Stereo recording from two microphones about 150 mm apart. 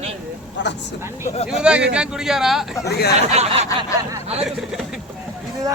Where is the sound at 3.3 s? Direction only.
45° right (ahead or behind).